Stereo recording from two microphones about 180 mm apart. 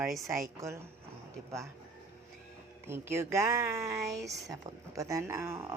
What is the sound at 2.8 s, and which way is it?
Speech, 15° right (ahead or behind).